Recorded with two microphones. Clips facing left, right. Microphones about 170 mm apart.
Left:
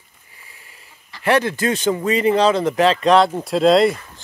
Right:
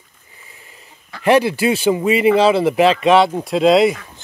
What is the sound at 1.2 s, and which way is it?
Speech, 10° right (ahead or behind).